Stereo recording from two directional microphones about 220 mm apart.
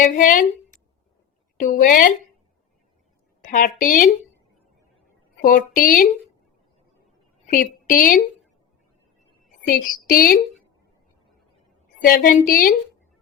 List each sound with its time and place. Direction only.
0.0 s a woman's voice: 35° left (ahead or behind)
1.5 s a woman's voice: 35° left (ahead or behind)
3.4 s a woman's voice: 40° left (ahead or behind)
5.4 s a woman's voice: 40° left (ahead or behind)
7.4 s a woman's voice: 40° left (ahead or behind)
9.6 s a woman's voice: 40° left (ahead or behind)
12.0 s a woman's voice: 40° left (ahead or behind)